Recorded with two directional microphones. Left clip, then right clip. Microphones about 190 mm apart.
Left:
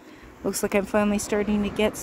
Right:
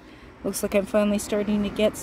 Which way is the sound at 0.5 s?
55° left (ahead or behind).